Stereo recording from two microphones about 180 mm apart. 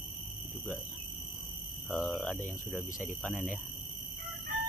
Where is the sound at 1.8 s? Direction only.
10° left (ahead or behind).